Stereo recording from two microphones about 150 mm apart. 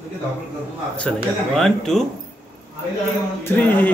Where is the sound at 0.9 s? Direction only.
5° left (ahead or behind).